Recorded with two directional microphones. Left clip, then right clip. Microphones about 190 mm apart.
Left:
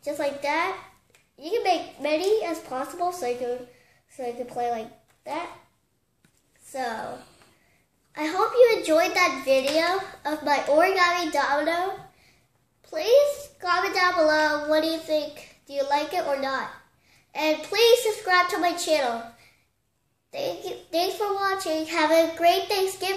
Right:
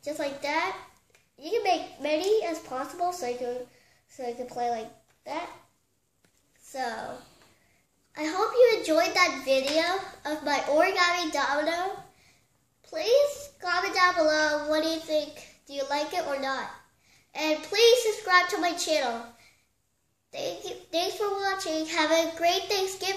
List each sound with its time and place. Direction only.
0.0 s child singing: 5° right (ahead or behind)
1.3 s a child's voice: 5° right (ahead or behind)
6.7 s a woman's voice: 5° right (ahead or behind)
8.1 s a child's voice: 5° right (ahead or behind)
12.8 s a child's voice: 5° right (ahead or behind)
20.2 s child singing: 5° right (ahead or behind)